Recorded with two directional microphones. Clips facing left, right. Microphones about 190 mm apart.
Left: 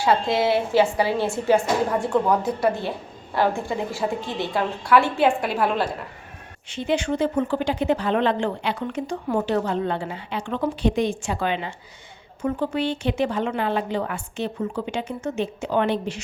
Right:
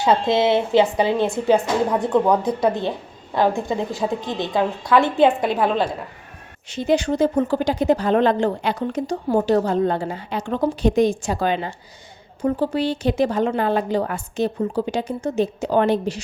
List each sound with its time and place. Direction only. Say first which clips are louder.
0.0 s a woman's voice: right 3 dB; 20° right (ahead or behind)
6.7 s speech: right 4 dB; 40° right (ahead or behind)